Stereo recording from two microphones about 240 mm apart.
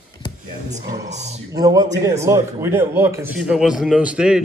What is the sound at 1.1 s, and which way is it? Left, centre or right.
Speech, right.